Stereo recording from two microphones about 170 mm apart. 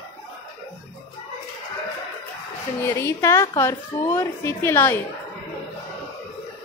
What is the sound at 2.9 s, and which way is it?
A woman's voice, 15° left (ahead or behind).